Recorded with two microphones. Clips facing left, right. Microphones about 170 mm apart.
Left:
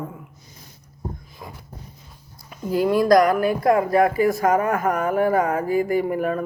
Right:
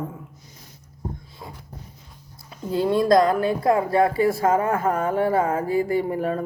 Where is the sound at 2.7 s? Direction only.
25° right (ahead or behind).